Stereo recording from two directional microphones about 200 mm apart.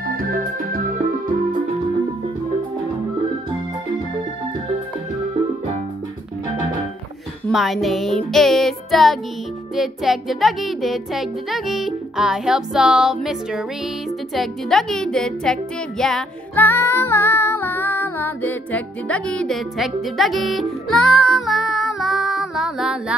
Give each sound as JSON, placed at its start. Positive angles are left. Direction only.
{"t": 0.0, "sound": "music", "side_deg": -45}
{"t": 7.4, "sound": "music", "side_deg": 0}